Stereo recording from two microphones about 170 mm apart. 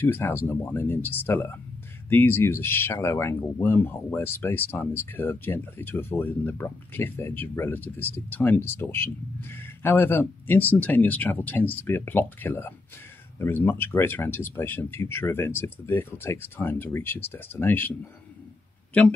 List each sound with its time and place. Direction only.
0.0 s speech: 10° left (ahead or behind)